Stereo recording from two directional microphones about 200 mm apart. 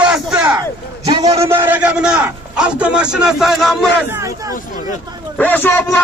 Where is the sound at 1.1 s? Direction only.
30° right (ahead or behind).